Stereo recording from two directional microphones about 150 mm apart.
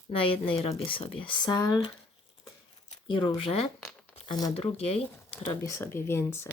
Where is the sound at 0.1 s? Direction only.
35° left (ahead or behind).